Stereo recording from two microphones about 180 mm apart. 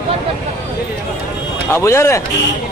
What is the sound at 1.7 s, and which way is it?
Speech, 15° left (ahead or behind).